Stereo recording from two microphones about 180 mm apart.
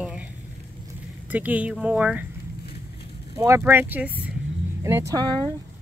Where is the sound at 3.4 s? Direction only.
15° right (ahead or behind).